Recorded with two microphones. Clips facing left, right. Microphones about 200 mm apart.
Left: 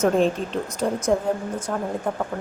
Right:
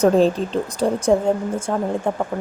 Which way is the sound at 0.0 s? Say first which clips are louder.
Right 4 dB; 35° right (ahead or behind).